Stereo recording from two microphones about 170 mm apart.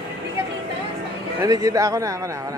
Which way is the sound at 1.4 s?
20° right (ahead or behind).